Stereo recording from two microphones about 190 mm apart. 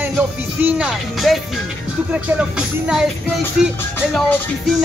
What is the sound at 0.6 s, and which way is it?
Music, 5° right (ahead or behind).